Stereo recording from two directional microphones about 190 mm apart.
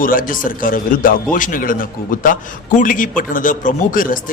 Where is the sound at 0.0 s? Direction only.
45° left (ahead or behind).